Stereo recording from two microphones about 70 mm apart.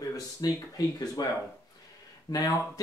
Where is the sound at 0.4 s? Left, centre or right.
Left.